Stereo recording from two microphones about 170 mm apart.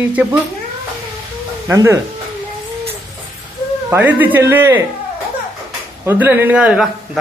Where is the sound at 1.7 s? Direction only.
15° right (ahead or behind).